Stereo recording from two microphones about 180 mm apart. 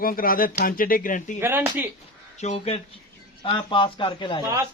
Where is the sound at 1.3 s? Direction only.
10° right (ahead or behind).